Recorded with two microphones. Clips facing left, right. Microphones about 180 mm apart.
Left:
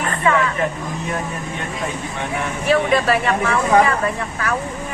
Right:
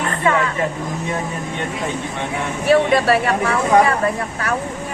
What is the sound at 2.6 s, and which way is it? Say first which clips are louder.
Speech: right 3 dB; 35° right (ahead or behind).